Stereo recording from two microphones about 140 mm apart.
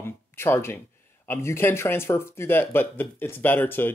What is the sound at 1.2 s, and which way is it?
Speech, 15° left (ahead or behind).